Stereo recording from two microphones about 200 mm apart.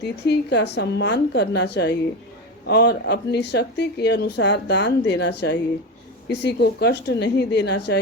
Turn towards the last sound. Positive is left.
turn(degrees=55)  # may be behind; listen again after turning